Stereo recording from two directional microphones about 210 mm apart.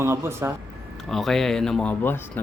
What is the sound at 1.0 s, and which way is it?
Speech, centre (ahead or behind).